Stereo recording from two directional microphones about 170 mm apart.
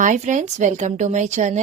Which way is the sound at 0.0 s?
45° right (ahead or behind).